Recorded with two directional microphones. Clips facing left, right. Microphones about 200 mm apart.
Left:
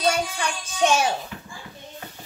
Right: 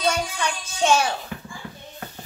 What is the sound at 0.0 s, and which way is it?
Music, 15° left (ahead or behind).